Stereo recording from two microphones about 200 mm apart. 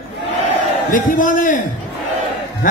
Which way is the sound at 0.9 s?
40° left (ahead or behind).